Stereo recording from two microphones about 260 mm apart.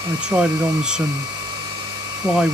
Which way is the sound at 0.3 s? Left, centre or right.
Centre.